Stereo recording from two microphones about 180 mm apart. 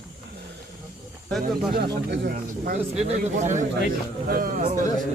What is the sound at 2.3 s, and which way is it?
Speech, 50° right (ahead or behind).